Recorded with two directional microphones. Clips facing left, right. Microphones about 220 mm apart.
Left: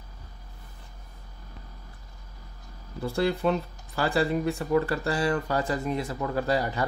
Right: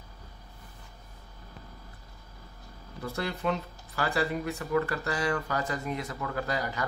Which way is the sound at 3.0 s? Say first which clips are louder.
Left 7 dB; 30° left (ahead or behind).